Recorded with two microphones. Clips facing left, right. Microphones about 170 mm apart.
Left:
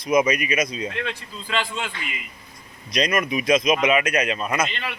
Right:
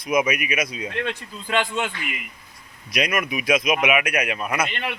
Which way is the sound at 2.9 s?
5° right (ahead or behind).